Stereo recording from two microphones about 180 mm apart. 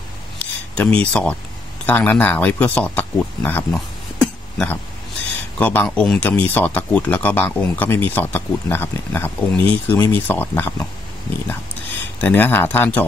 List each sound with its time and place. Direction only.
0.4 s a sound: 5° left (ahead or behind)
1.9 s speech: 10° left (ahead or behind)
12.2 s speech: 10° left (ahead or behind)